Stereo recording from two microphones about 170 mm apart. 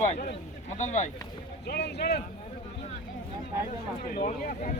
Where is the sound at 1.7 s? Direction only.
75° left (ahead or behind).